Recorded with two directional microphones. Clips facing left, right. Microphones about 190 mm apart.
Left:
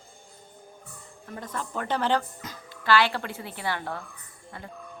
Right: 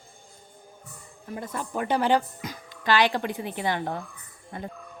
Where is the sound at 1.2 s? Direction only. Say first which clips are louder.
Right 2 dB; 10° right (ahead or behind).